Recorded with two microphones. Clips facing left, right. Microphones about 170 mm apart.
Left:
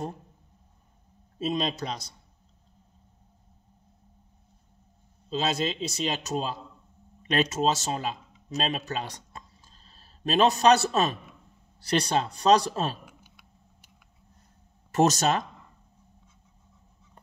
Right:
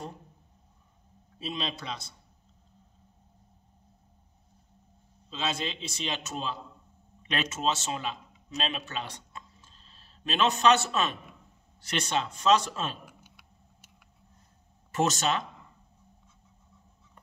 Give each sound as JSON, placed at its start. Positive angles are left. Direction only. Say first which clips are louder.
{"t": 1.4, "sound": "a man's voice", "louder": "left 7 dB", "side_deg": 45}
{"t": 5.3, "sound": "a man's voice", "louder": "left 5 dB", "side_deg": 40}
{"t": 13.0, "sound": "a sound", "louder": "even", "side_deg": 0}
{"t": 14.9, "sound": "speech", "louder": "left 5 dB", "side_deg": 40}